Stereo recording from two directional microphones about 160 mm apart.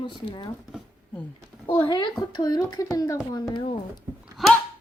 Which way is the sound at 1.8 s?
30° left (ahead or behind).